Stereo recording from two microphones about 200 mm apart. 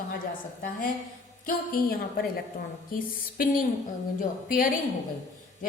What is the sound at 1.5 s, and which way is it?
Speech, 45° left (ahead or behind).